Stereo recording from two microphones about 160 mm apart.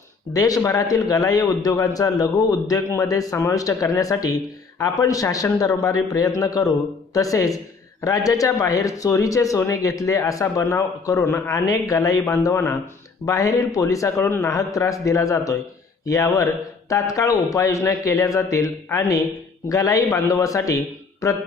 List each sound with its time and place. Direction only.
0.3 s speech: 20° left (ahead or behind)